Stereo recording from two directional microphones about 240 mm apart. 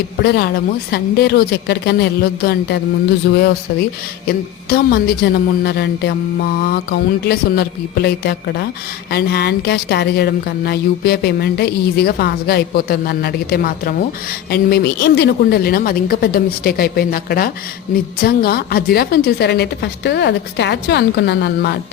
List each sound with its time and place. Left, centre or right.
0.3 s a woman's voice: left
4.3 s a woman's voice: left